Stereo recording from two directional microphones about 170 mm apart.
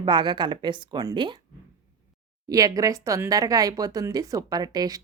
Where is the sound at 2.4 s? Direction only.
20° right (ahead or behind).